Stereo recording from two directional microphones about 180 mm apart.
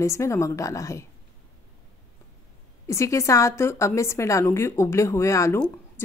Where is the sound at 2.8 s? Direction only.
15° left (ahead or behind).